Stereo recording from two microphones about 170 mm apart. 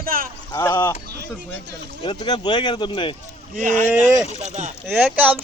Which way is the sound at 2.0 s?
25° left (ahead or behind).